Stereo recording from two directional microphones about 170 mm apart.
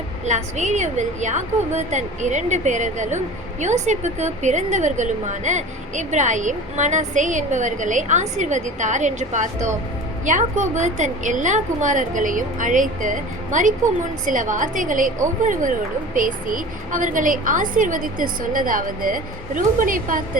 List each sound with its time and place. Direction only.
0.3 s a woman's voice: 45° right (ahead or behind)